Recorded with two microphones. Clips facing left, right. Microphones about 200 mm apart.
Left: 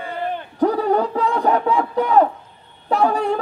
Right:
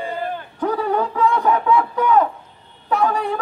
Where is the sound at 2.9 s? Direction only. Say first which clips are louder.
Left 2 dB; 35° left (ahead or behind).